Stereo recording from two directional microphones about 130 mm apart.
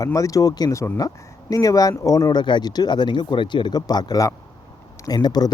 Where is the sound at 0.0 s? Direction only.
25° left (ahead or behind).